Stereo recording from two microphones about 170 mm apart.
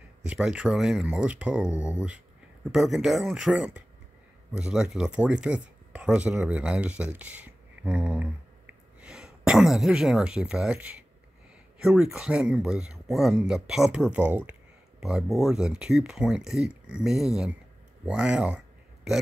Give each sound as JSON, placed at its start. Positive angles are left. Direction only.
{"t": 0.3, "sound": "speech", "side_deg": -5}